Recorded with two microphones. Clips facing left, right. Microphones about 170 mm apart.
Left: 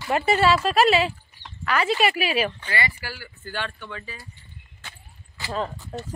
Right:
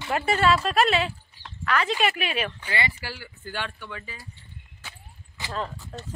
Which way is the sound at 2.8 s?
25° right (ahead or behind).